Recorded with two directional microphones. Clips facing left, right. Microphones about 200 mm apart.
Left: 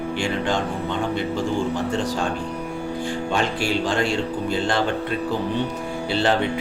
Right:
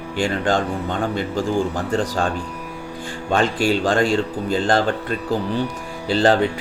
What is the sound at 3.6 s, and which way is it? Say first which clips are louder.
A man's voice: right 4 dB; 45° right (ahead or behind).